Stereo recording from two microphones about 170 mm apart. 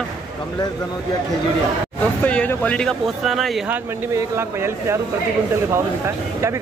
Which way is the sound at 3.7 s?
15° right (ahead or behind).